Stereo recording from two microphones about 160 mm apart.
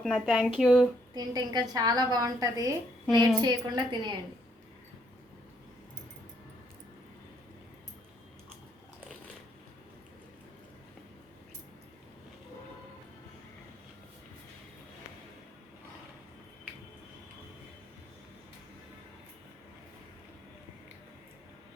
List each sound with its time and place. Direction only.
0.0 s speech: centre (ahead or behind)
1.1 s a woman's voice: 25° right (ahead or behind)